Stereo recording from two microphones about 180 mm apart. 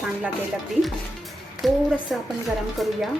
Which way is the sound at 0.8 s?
Centre (ahead or behind).